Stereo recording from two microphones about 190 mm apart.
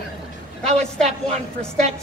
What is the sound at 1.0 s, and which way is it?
Speech, 35° right (ahead or behind).